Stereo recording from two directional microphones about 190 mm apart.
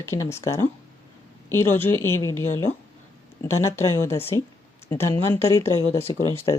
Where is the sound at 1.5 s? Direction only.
15° left (ahead or behind).